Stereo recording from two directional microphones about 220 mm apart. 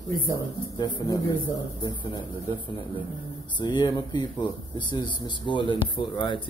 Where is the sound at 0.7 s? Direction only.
20° left (ahead or behind).